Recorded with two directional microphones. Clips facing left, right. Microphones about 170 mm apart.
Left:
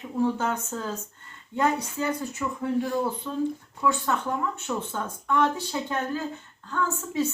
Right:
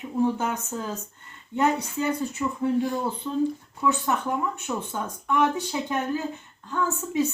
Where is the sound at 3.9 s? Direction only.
15° right (ahead or behind).